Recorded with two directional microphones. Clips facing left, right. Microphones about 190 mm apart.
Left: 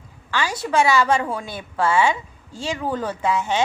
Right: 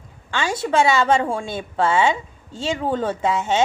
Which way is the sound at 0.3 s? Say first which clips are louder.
Right 2 dB; 25° right (ahead or behind).